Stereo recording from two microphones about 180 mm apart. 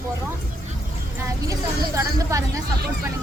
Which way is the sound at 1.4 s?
20° right (ahead or behind).